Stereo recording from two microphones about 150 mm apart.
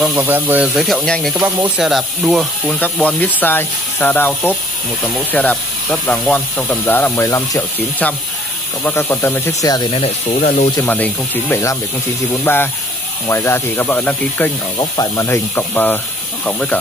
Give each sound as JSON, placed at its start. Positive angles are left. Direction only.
{"t": 0.0, "sound": "speech", "side_deg": -10}
{"t": 0.7, "sound": "speech", "side_deg": 0}
{"t": 9.9, "sound": "speech", "side_deg": 40}
{"t": 10.8, "sound": "speech", "side_deg": 10}
{"t": 14.8, "sound": "speech", "side_deg": 20}